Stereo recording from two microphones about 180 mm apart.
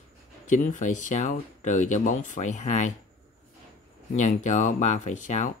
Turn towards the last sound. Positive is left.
turn(degrees=45)  # may be behind; listen again after turning